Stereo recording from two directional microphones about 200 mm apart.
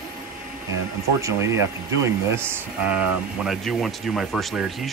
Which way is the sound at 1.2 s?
15° right (ahead or behind).